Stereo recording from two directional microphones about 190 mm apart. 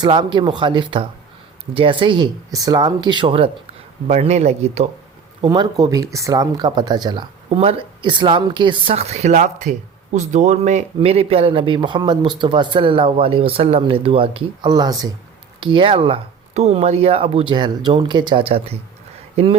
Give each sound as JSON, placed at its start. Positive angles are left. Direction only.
{"t": 0.0, "sound": "speech", "side_deg": -25}
{"t": 5.4, "sound": "speech", "side_deg": -20}